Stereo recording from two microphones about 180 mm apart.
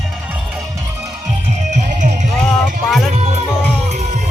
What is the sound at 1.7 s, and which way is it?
Music, 45° right (ahead or behind).